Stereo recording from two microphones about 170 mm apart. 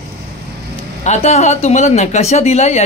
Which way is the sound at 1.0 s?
40° left (ahead or behind).